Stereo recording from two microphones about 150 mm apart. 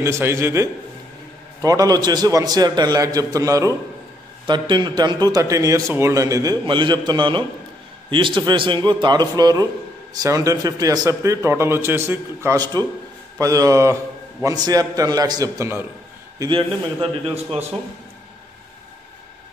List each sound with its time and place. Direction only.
0.0 s a man's voice: 15° right (ahead or behind)
16.3 s a man's voice: 35° right (ahead or behind)